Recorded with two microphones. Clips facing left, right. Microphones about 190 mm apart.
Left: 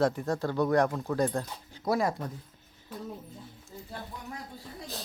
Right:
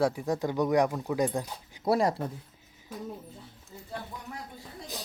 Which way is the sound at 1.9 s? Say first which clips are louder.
Right 2 dB; 30° right (ahead or behind).